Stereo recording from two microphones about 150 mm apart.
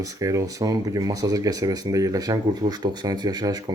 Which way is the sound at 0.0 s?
20° right (ahead or behind).